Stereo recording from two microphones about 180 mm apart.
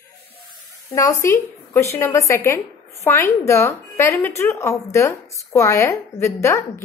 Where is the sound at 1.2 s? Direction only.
15° left (ahead or behind).